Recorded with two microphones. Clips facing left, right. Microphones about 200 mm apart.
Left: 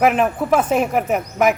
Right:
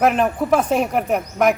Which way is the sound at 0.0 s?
Centre (ahead or behind).